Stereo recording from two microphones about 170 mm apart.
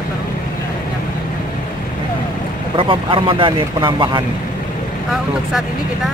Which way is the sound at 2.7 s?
30° right (ahead or behind).